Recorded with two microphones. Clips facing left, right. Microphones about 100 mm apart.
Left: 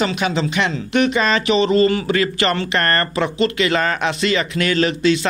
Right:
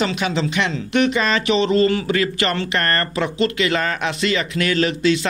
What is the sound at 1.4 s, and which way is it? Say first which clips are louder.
Speech: left 1 dB; 20° left (ahead or behind).